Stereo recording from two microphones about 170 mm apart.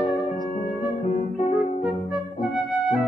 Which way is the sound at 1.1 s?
40° left (ahead or behind).